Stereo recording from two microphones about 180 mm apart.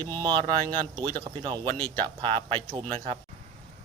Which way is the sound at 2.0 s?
30° right (ahead or behind).